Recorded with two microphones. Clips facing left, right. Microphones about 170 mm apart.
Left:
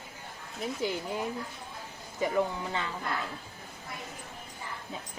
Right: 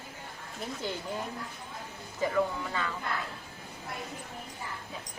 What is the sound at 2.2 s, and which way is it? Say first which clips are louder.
Speech: even; 20° left (ahead or behind).